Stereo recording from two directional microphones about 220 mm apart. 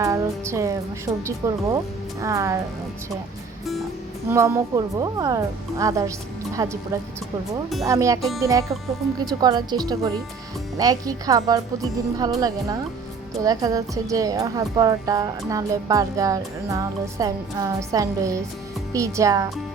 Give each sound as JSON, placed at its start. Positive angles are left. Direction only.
{"t": 0.0, "sound": "a woman's voice", "side_deg": -15}
{"t": 4.3, "sound": "a woman's voice", "side_deg": -10}
{"t": 7.9, "sound": "a woman's voice", "side_deg": -15}